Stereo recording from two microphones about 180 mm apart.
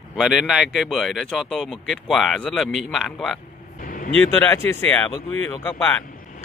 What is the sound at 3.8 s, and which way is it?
Vehicle, 50° left (ahead or behind).